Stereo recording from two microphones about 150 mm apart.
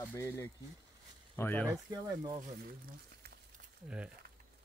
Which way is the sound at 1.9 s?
30° right (ahead or behind).